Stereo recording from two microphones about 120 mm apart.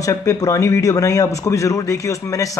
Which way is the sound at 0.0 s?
25° left (ahead or behind).